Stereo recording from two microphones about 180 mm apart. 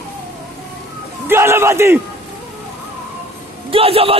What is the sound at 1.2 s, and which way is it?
Speech, 15° right (ahead or behind).